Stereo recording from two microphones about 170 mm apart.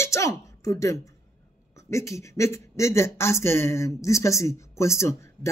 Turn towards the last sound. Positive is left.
turn(degrees=15)  # may be behind; listen again after turning